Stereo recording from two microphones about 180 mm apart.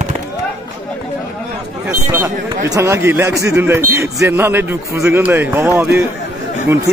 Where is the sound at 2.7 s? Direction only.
15° right (ahead or behind).